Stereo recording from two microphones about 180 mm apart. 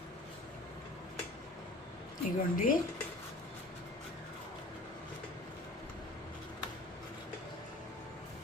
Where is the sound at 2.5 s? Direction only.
50° left (ahead or behind).